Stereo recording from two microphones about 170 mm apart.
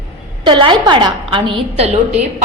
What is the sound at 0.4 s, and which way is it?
A woman's voice, 30° right (ahead or behind).